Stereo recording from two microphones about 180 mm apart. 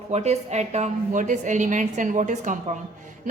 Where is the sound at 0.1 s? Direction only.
40° right (ahead or behind).